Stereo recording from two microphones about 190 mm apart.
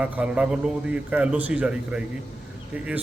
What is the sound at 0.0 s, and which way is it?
A man's voice, 5° right (ahead or behind).